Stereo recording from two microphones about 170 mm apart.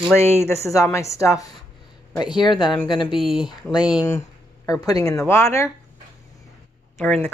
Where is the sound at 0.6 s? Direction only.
15° left (ahead or behind).